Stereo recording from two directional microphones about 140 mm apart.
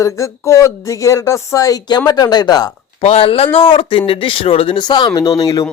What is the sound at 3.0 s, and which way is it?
Speech, 40° left (ahead or behind).